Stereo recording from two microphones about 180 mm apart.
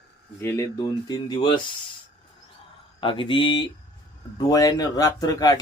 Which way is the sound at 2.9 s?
30° left (ahead or behind).